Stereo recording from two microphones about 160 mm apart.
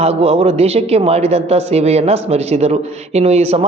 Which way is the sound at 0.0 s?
40° right (ahead or behind).